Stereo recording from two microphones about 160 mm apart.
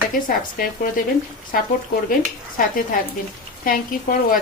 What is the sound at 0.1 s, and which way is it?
Speech, 60° left (ahead or behind).